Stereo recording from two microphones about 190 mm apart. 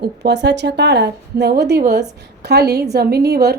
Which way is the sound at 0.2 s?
60° right (ahead or behind).